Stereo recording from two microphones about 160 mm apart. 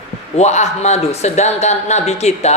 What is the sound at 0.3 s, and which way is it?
A woman's voice, 45° left (ahead or behind).